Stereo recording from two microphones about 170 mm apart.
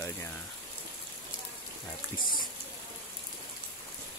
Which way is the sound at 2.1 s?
55° left (ahead or behind).